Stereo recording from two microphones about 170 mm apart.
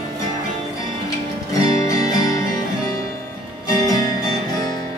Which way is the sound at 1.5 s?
20° left (ahead or behind).